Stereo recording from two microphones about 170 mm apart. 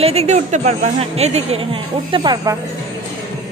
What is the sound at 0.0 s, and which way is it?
A woman's voice, 35° right (ahead or behind).